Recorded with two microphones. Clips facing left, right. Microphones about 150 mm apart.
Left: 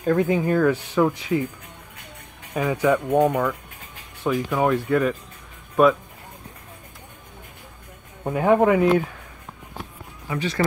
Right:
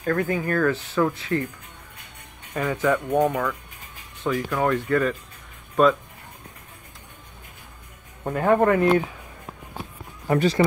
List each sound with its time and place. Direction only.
0.0 s speech: 15° left (ahead or behind)
2.5 s speech: 10° left (ahead or behind)
8.2 s speech: 5° left (ahead or behind)
10.2 s speech: 45° right (ahead or behind)